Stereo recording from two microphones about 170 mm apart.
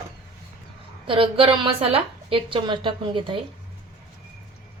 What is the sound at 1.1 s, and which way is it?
A woman's voice, 30° right (ahead or behind).